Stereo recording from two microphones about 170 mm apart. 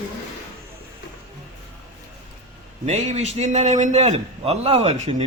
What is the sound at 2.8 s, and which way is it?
A man's voice, 40° right (ahead or behind).